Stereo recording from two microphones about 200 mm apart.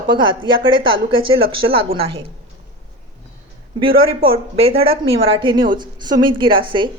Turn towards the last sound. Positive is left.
turn(degrees=-25)  # may be behind; listen again after turning